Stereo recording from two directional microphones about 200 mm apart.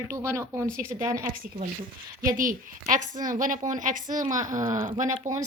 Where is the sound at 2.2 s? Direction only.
45° right (ahead or behind).